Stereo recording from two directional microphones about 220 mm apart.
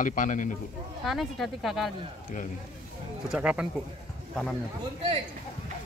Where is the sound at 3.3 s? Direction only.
5° right (ahead or behind).